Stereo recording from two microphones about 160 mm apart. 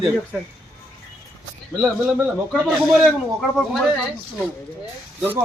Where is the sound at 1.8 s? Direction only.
Centre (ahead or behind).